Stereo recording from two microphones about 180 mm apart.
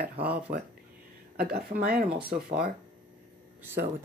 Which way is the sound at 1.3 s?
55° right (ahead or behind).